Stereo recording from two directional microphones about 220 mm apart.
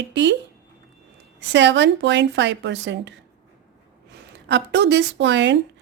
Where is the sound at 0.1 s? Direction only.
55° right (ahead or behind).